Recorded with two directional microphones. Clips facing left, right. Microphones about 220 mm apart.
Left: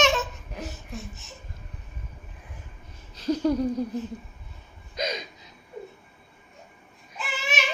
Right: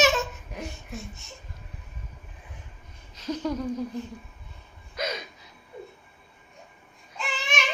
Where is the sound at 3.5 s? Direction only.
35° left (ahead or behind).